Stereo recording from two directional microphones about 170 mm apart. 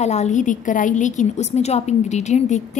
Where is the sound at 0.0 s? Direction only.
40° left (ahead or behind).